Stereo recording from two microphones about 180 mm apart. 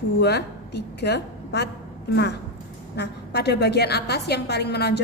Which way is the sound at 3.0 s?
65° left (ahead or behind).